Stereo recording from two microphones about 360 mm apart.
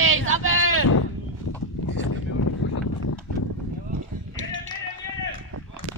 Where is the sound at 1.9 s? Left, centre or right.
Left.